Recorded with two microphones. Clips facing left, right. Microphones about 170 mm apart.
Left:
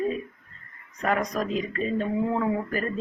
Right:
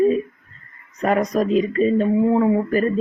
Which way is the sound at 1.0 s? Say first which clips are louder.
Right 7 dB; 40° right (ahead or behind).